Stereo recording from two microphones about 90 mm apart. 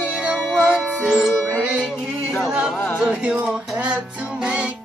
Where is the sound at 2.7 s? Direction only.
25° left (ahead or behind).